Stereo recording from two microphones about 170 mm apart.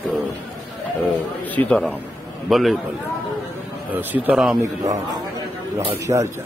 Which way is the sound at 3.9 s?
10° right (ahead or behind).